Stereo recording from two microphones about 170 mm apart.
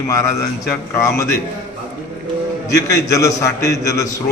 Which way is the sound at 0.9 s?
20° left (ahead or behind).